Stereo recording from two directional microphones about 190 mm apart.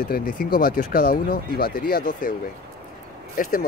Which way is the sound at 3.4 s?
45° left (ahead or behind).